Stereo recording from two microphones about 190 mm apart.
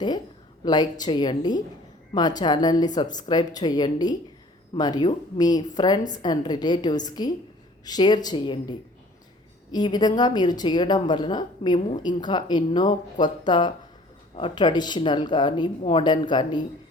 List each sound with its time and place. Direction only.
0.6 s speech: 20° left (ahead or behind)
9.7 s speech: 20° left (ahead or behind)